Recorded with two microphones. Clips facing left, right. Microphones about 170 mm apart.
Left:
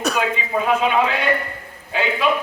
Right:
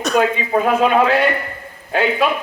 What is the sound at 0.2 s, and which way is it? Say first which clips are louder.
A man's voice: right 5 dB; 45° right (ahead or behind).